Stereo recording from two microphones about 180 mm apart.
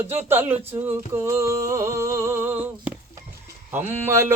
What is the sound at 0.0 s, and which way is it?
Speech, 35° right (ahead or behind).